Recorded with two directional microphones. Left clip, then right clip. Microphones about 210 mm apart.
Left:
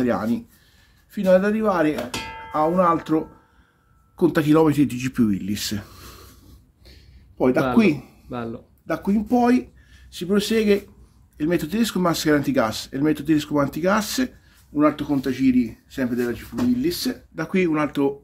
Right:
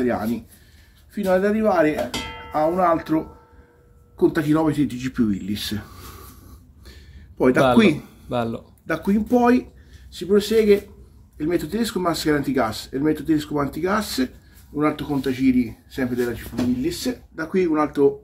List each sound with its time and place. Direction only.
0.0 s speech: 55° left (ahead or behind)
4.2 s speech: 55° left (ahead or behind); by 6.2 s 35° left (ahead or behind)
6.9 s a sound: 15° left (ahead or behind)
7.7 s speech: 15° left (ahead or behind)
8.3 s speech: 30° right (ahead or behind)
8.8 s speech: 20° left (ahead or behind); by 9.7 s 35° left (ahead or behind)
10.1 s speech: 55° left (ahead or behind)